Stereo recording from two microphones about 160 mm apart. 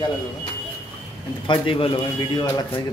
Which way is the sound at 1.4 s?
35° left (ahead or behind).